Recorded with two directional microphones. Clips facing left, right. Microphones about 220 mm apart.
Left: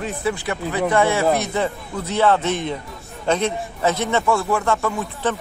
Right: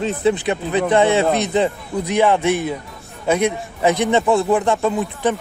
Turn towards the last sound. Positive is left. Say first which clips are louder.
# right 4 dB
turn(degrees=-15)  # may be behind; listen again after turning